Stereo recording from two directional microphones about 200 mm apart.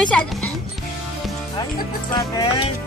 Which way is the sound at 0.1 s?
5° left (ahead or behind).